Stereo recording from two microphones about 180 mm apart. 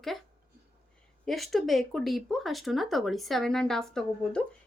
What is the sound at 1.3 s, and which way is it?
Speech, centre (ahead or behind).